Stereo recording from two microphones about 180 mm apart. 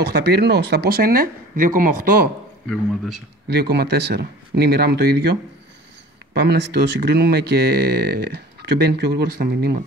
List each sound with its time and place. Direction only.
0.0 s speech: 65° right (ahead or behind)
3.4 s speech: 65° right (ahead or behind)